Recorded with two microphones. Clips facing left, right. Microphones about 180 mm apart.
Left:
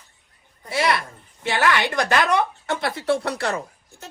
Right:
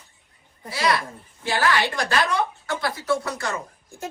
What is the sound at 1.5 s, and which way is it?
Speech, 20° left (ahead or behind).